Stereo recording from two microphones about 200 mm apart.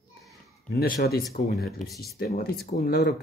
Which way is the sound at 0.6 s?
50° left (ahead or behind).